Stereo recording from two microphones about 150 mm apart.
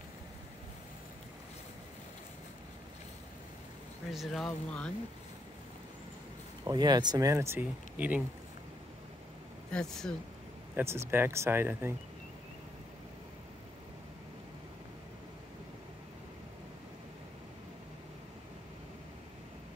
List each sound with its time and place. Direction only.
4.1 s speech: centre (ahead or behind)
6.6 s speech: 25° right (ahead or behind); by 8.2 s 10° right (ahead or behind)
9.7 s speech: 5° left (ahead or behind)
10.8 s speech: 15° right (ahead or behind)